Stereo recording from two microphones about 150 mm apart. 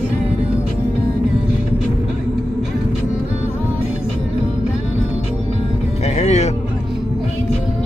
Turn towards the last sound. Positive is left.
turn(degrees=50)  # may be behind; listen again after turning